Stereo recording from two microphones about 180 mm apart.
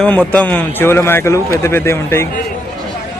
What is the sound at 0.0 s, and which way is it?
A man's voice, 10° left (ahead or behind).